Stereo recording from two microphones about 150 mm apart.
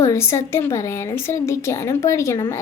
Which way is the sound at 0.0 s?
20° left (ahead or behind).